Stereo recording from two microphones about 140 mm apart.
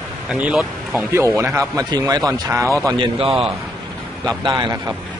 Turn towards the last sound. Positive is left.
turn(degrees=-35)  # may be behind; listen again after turning